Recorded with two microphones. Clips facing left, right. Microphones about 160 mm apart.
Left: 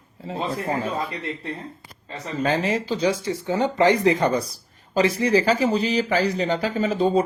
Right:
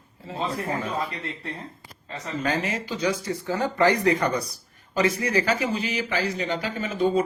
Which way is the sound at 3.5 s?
20° left (ahead or behind).